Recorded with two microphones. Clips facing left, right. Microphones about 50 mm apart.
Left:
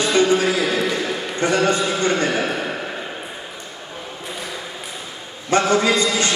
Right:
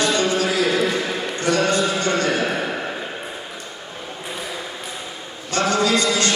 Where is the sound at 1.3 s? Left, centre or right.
Left.